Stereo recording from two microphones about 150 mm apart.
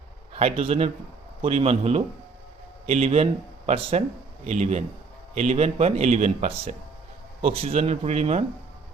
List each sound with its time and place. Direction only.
0.3 s a man's voice: 40° right (ahead or behind)